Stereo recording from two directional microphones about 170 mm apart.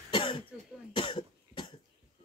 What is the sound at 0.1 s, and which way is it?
Cough, 30° left (ahead or behind).